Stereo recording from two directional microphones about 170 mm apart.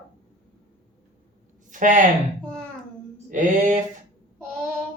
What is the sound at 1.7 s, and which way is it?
Speech, 50° right (ahead or behind).